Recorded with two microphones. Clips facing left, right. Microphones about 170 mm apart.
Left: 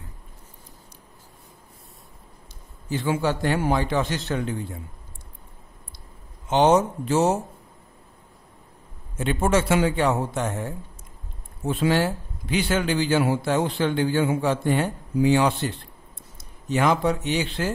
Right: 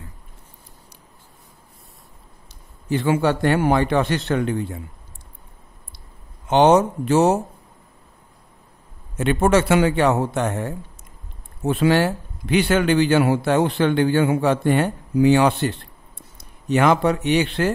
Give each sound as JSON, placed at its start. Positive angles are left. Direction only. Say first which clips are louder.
{"t": 2.9, "sound": "a man's voice", "louder": "right 5 dB", "side_deg": -65}
{"t": 6.4, "sound": "a man's voice", "louder": "right 4 dB", "side_deg": -65}
{"t": 9.2, "sound": "a man's voice", "louder": "right 5 dB", "side_deg": -65}